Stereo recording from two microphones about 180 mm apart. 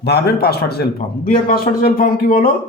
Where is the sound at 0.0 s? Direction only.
60° left (ahead or behind).